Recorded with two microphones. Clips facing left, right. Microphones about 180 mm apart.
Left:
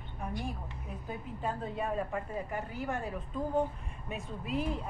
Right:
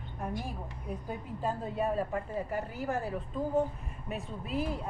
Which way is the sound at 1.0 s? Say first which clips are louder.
Right 1 dB; 10° right (ahead or behind).